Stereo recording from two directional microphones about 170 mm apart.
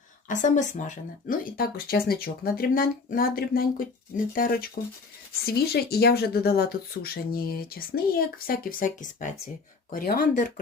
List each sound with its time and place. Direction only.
0.3 s speech: 50° left (ahead or behind)
9.9 s speech: 60° left (ahead or behind)